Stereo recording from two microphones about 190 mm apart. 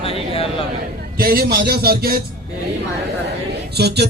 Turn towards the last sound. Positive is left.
turn(degrees=-60)  # may be behind; listen again after turning